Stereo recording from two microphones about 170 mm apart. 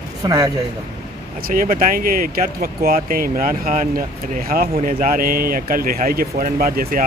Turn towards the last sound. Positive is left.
turn(degrees=-60)  # may be behind; listen again after turning